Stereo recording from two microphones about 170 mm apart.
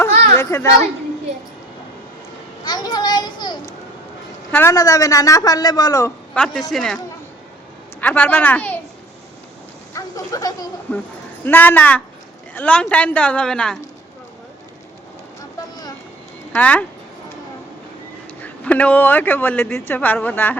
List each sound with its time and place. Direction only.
0.3 s speech: 15° left (ahead or behind)
2.6 s a sound: 25° left (ahead or behind)
4.5 s a woman's voice: 15° left (ahead or behind)
6.3 s speech: 5° left (ahead or behind)
8.0 s speech: 10° left (ahead or behind)
9.9 s speech: 20° left (ahead or behind)
10.9 s speech: 10° left (ahead or behind)
16.5 s speech: 10° left (ahead or behind)
18.4 s speech: 10° left (ahead or behind)